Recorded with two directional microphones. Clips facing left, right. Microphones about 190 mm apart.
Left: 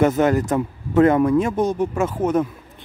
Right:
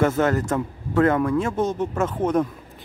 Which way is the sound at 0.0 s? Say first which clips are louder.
Left 3 dB; 15° left (ahead or behind).